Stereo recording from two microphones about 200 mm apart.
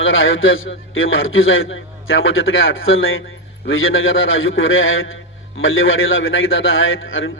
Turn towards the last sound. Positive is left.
turn(degrees=75)  # may be behind; listen again after turning